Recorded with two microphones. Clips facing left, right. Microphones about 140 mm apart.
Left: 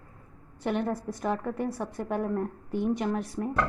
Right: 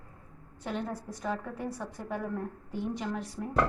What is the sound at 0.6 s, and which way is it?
A woman's voice, 65° left (ahead or behind).